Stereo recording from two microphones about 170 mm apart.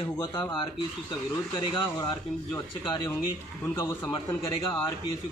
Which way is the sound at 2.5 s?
15° left (ahead or behind).